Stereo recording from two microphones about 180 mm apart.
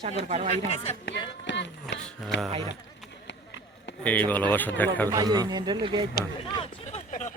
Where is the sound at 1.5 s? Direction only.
80° left.